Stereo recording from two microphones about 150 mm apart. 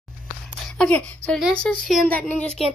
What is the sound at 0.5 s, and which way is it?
A woman's voice, centre (ahead or behind).